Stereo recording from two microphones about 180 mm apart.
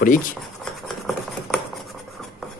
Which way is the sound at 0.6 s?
Centre (ahead or behind).